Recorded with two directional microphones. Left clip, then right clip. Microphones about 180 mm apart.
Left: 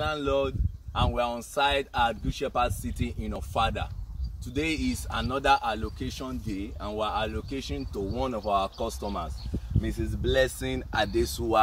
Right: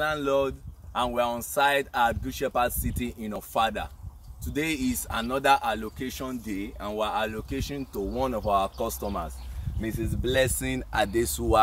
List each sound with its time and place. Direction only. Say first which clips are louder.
0.0 s speech: right 2 dB; 15° right (ahead or behind)
10.2 s speech: even; 30° right (ahead or behind)